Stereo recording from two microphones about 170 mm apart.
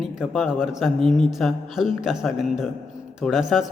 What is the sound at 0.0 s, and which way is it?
A man's voice, centre (ahead or behind).